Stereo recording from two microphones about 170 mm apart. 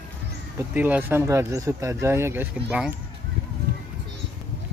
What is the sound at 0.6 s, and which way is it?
Speech, 10° right (ahead or behind).